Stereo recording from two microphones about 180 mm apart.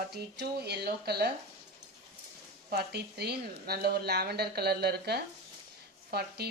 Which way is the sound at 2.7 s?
60° right (ahead or behind).